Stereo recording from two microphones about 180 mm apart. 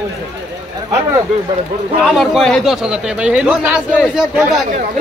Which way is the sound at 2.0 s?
Centre (ahead or behind).